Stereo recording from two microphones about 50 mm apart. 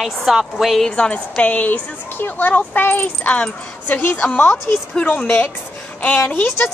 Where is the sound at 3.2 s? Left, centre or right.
Left.